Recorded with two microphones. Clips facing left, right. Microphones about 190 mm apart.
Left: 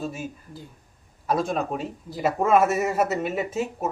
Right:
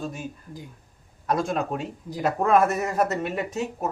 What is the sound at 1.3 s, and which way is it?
A man's voice, centre (ahead or behind).